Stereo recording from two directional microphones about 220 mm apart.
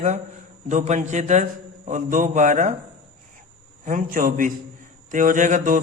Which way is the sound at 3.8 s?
35° right (ahead or behind).